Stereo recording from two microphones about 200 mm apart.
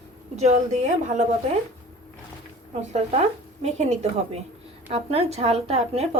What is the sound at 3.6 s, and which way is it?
A woman's voice, 30° right (ahead or behind).